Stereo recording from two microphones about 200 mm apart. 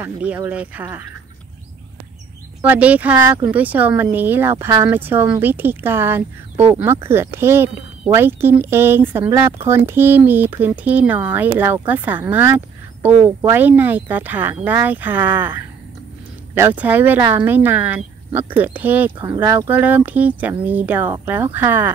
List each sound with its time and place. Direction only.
0.0 s speech: 10° right (ahead or behind)
2.6 s speech: 10° right (ahead or behind)
16.5 s speech: 10° right (ahead or behind)